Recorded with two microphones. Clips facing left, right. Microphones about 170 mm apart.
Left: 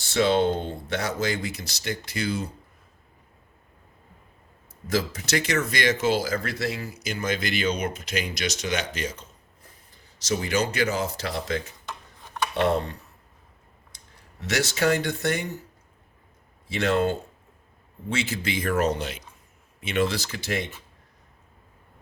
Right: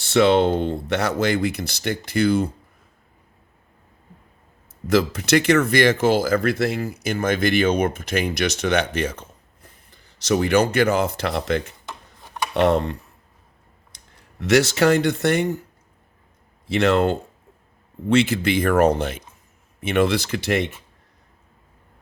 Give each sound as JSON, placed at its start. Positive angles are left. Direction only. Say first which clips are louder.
{"t": 0.1, "sound": "speech", "louder": "right 5 dB", "side_deg": -70}
{"t": 4.9, "sound": "speech", "louder": "right 8 dB", "side_deg": -65}
{"t": 14.5, "sound": "speech", "louder": "right 7 dB", "side_deg": -75}
{"t": 16.6, "sound": "speech", "louder": "right 5 dB", "side_deg": -70}